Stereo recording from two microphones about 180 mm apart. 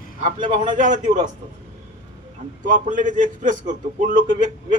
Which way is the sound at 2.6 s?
45° right (ahead or behind).